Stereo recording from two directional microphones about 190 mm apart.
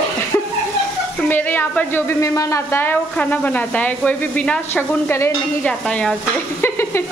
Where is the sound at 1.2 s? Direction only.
10° left (ahead or behind).